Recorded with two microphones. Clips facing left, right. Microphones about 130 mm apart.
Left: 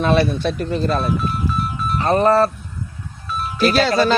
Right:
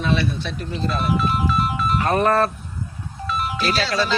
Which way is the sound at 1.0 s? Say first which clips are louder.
Right 1 dB; 90° right.